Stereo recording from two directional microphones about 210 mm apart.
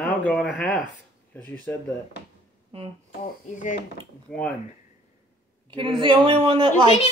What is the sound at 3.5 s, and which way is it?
Speech, 40° left (ahead or behind).